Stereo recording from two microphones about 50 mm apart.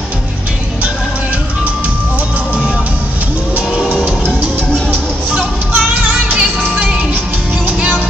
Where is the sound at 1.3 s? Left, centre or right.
Right.